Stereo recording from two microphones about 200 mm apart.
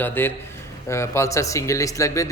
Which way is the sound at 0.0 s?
10° left (ahead or behind).